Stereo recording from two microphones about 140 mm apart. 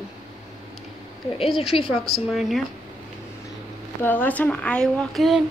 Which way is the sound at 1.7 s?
40° left (ahead or behind).